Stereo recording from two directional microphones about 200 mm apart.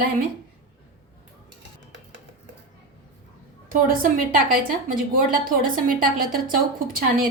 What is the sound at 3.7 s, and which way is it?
A woman's voice, 45° right (ahead or behind).